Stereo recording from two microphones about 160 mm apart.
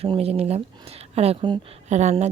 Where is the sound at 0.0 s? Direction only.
40° right (ahead or behind).